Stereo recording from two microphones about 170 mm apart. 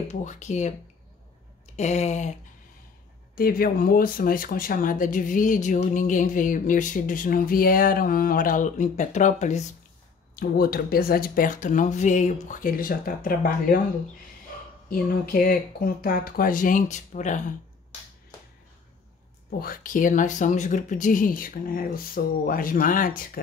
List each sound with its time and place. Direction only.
0.1 s speech: 45° left (ahead or behind)
1.8 s a sound: 40° left (ahead or behind)
3.3 s speech: 60° left (ahead or behind); by 9.7 s 45° left (ahead or behind)
10.4 s speech: 60° left (ahead or behind)
14.9 s speech: 55° left (ahead or behind)
19.6 s speech: 55° left (ahead or behind)